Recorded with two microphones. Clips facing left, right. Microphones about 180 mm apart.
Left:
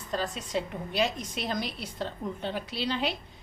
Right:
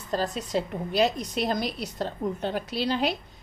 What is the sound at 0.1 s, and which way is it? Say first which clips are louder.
A woman's voice: right 4 dB; 35° right (ahead or behind).